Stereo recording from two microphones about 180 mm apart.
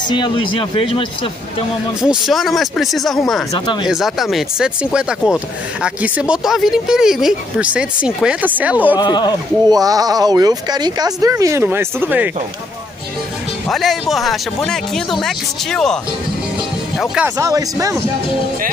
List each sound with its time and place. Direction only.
0.1 s speech: 30° left (ahead or behind)
2.0 s speech: centre (ahead or behind)
8.9 s speech: 25° left (ahead or behind)
9.7 s speech: 20° right (ahead or behind)
13.7 s speech: centre (ahead or behind)
17.0 s speech: 5° right (ahead or behind)
17.4 s speech: 20° right (ahead or behind)